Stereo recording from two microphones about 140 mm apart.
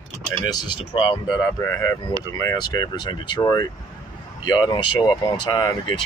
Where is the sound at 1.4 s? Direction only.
20° left (ahead or behind).